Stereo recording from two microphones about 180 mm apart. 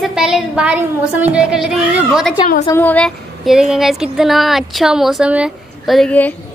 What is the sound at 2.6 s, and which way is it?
Speech, 10° left (ahead or behind).